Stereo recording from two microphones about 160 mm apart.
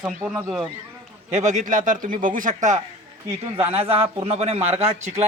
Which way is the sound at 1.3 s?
50° right (ahead or behind).